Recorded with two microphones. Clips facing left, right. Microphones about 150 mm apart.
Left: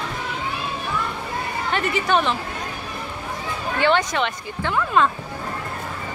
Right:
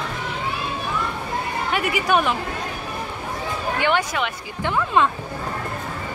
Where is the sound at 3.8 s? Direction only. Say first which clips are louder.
Left 3 dB; 10° right (ahead or behind).